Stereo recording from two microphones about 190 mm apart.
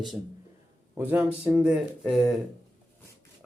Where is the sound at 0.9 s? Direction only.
10° right (ahead or behind).